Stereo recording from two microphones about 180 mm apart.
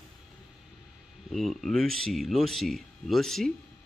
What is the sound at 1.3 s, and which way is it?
Speech, centre (ahead or behind).